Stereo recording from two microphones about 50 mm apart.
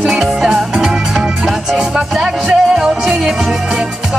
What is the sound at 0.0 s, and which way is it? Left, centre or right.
Music, centre.